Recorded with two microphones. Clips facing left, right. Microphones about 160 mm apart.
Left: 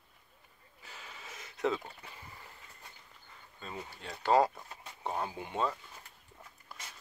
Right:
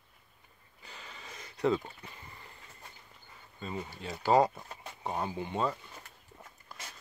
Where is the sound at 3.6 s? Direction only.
5° right (ahead or behind).